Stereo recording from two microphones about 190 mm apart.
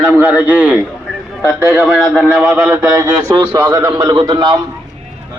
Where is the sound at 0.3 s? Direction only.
5° right (ahead or behind).